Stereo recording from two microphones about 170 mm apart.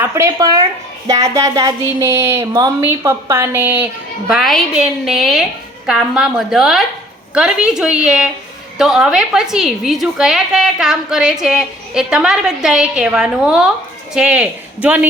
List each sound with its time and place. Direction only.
0.0 s speech: 15° right (ahead or behind)
4.3 s a woman's voice: centre (ahead or behind)